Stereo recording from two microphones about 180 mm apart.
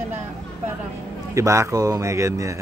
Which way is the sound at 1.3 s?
15° right (ahead or behind).